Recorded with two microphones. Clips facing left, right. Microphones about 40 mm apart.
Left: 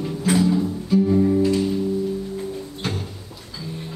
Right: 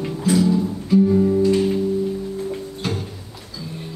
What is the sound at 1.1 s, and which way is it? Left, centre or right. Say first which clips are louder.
Music: right 1 dB; centre.